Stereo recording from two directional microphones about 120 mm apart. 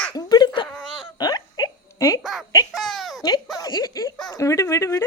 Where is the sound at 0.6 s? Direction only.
5° left (ahead or behind).